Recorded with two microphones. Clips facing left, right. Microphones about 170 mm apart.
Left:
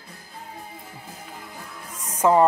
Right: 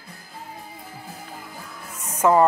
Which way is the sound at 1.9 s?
10° left (ahead or behind).